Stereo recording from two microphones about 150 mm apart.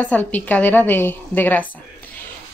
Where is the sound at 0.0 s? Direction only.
10° left (ahead or behind).